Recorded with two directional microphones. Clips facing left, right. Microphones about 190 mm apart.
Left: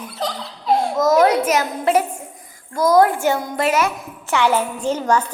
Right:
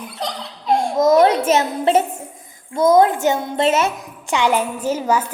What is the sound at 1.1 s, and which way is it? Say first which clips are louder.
A woman's voice: right 1 dB; 30° right (ahead or behind).